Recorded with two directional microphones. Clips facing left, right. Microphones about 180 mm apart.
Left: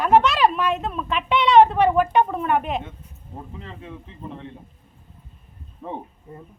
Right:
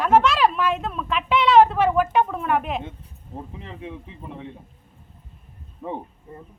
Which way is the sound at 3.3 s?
15° right (ahead or behind).